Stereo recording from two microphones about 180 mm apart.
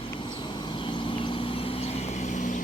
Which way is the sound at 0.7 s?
25° left (ahead or behind).